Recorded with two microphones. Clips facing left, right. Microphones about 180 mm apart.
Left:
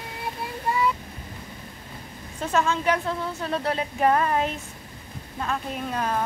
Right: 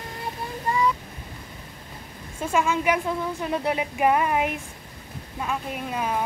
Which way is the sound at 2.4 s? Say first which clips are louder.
Right 1 dB; 10° right (ahead or behind).